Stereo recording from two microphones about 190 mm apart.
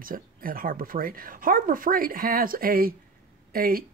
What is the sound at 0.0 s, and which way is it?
Speech, 50° right (ahead or behind).